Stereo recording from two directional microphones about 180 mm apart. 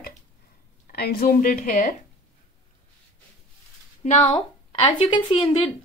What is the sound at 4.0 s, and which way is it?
A woman's voice, 35° left (ahead or behind).